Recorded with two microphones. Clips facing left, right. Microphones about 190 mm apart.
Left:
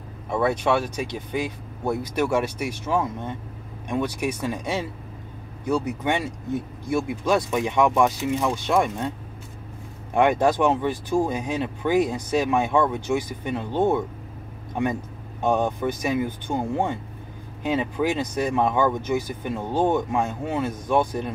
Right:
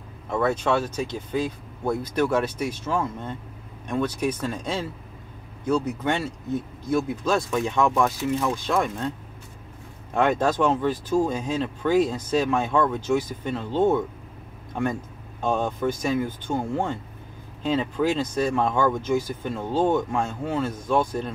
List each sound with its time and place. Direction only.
0.3 s speech: 15° left (ahead or behind)
10.1 s speech: 15° left (ahead or behind)
15.4 s speech: 15° left (ahead or behind)